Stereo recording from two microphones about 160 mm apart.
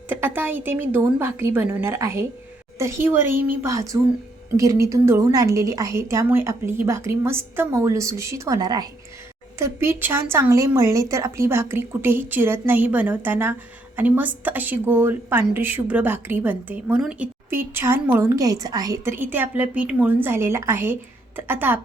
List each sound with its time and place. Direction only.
0.1 s a woman's voice: 15° right (ahead or behind)